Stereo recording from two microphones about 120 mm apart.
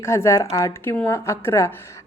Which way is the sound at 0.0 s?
25° left (ahead or behind).